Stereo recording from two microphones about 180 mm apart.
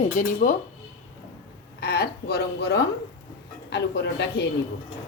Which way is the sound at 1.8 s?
65° left (ahead or behind).